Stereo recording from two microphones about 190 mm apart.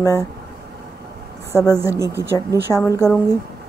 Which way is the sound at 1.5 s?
10° right (ahead or behind).